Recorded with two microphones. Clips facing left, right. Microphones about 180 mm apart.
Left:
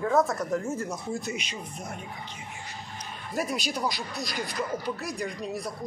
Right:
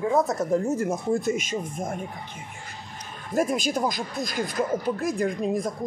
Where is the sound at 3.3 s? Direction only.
45° right (ahead or behind).